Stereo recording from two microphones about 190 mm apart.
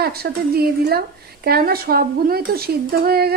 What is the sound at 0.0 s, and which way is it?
A woman's voice, 55° right (ahead or behind).